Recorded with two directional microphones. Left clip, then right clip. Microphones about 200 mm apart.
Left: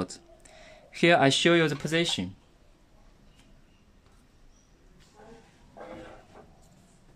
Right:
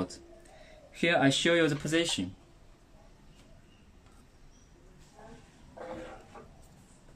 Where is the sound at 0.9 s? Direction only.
50° left (ahead or behind).